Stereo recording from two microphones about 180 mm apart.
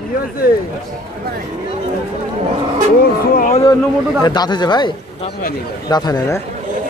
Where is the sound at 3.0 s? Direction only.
50° left (ahead or behind).